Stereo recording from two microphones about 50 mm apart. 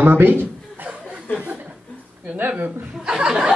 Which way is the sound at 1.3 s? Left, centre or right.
Left.